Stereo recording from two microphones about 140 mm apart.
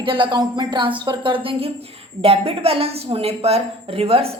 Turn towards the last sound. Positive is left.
turn(degrees=-45)  # may be behind; listen again after turning